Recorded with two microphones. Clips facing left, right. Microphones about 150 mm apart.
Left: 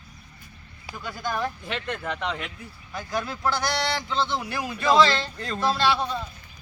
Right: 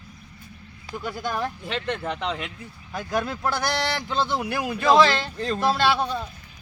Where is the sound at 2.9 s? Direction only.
55° right (ahead or behind).